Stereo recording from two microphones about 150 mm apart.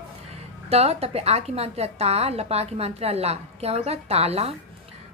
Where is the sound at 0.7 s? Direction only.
45° right (ahead or behind).